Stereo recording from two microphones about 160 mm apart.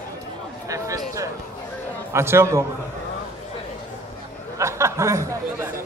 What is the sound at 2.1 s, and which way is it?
Speech, 15° right (ahead or behind).